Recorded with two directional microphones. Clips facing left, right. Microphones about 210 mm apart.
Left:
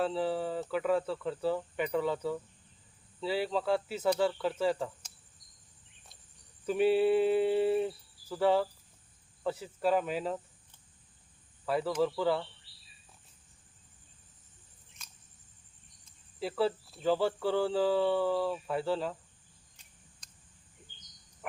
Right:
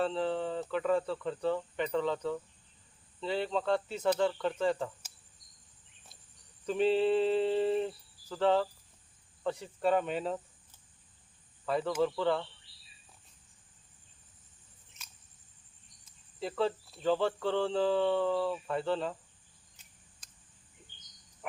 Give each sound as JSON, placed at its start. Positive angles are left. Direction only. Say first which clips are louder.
{"t": 0.0, "sound": "speech", "louder": "even", "side_deg": 5}
{"t": 6.7, "sound": "speech", "louder": "left 1 dB", "side_deg": 10}
{"t": 11.6, "sound": "speech", "louder": "even", "side_deg": 5}
{"t": 16.4, "sound": "speech", "louder": "left 1 dB", "side_deg": 5}